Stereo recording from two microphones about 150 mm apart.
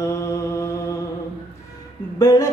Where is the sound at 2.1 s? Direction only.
25° left (ahead or behind).